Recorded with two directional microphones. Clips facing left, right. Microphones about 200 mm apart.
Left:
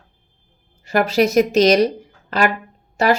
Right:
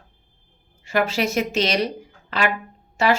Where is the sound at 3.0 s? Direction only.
40° left (ahead or behind).